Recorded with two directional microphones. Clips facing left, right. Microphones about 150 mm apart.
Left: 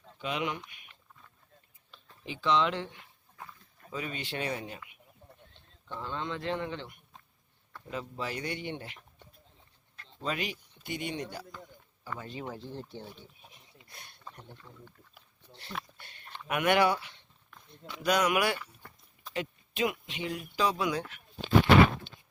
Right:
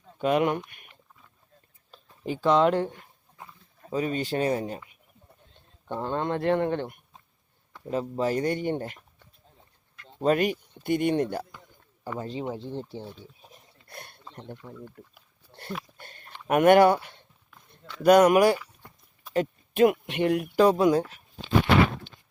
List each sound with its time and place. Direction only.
0.2 s speech: 50° right (ahead or behind)
2.2 s speech: 45° right (ahead or behind)
5.9 s speech: 50° right (ahead or behind)
7.9 s speech: 40° right (ahead or behind)
10.2 s speech: 50° right (ahead or behind)
12.2 s speech: 30° right (ahead or behind)
13.8 s a sound: 55° right (ahead or behind)
14.4 s speech: 70° right (ahead or behind)
15.0 s speech: 55° right (ahead or behind)
16.0 s a sound: 45° right (ahead or behind)
16.5 s speech: 45° right (ahead or behind)
18.8 s a sound: 15° right (ahead or behind)
19.3 s speech: 45° right (ahead or behind)